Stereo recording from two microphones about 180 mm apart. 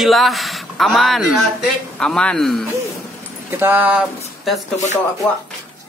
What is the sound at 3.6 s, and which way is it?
Speech, 10° right (ahead or behind).